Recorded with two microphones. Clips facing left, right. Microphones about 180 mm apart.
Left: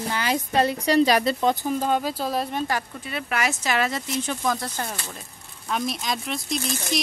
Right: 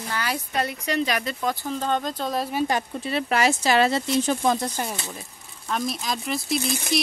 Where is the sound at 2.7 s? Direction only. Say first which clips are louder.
Right 3 dB; 30° right (ahead or behind).